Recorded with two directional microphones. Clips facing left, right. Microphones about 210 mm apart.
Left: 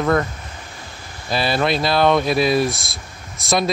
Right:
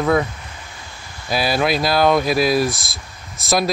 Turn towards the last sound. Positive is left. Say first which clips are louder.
# right 1 dB
turn(degrees=0)  # may be behind; listen again after turning